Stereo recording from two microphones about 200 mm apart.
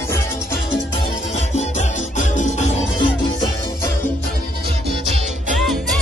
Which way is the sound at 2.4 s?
35° left (ahead or behind).